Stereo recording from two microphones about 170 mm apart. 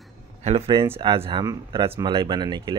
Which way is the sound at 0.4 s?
40° right (ahead or behind).